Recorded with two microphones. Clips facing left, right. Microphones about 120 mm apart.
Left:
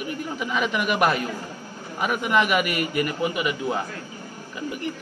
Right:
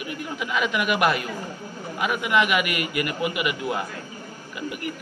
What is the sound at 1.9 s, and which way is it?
A man's voice, 40° left (ahead or behind).